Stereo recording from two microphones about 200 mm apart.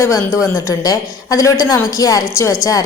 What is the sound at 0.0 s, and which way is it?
A woman's voice, 15° left (ahead or behind).